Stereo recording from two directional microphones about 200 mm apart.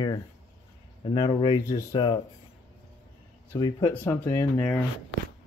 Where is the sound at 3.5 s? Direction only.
15° left (ahead or behind).